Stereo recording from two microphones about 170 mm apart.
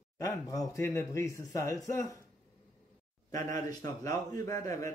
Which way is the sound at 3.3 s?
20° left (ahead or behind).